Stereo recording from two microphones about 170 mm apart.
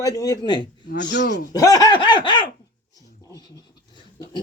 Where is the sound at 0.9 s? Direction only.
90° left.